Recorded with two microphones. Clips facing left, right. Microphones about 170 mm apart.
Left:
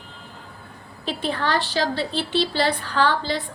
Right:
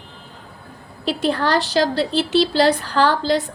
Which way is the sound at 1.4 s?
90° right.